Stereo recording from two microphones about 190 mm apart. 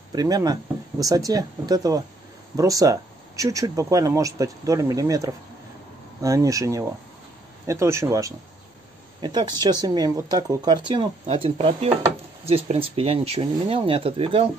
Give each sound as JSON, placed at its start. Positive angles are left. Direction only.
{"t": 0.1, "sound": "speech", "side_deg": -20}